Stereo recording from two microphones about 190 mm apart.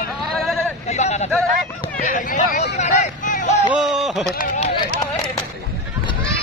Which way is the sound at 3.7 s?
Centre (ahead or behind).